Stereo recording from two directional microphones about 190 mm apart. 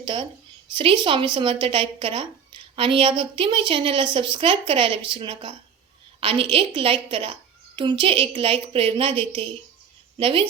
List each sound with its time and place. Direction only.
0.0 s a woman's voice: 25° right (ahead or behind)